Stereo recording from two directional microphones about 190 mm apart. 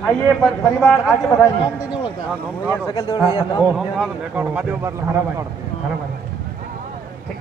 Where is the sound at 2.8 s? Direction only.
20° left (ahead or behind).